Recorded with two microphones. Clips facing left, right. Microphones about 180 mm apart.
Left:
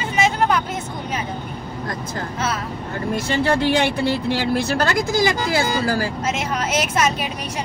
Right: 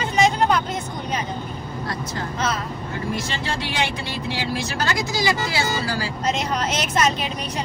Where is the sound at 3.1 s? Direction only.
60° left (ahead or behind).